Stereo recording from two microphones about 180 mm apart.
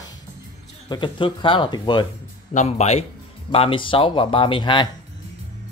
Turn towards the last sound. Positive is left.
turn(degrees=25)  # may be behind; listen again after turning